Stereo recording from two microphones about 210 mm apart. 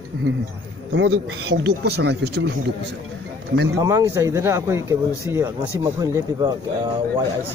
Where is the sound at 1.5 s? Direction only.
50° right (ahead or behind).